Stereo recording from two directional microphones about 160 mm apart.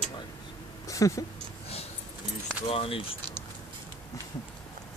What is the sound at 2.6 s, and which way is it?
Speech, 35° left (ahead or behind).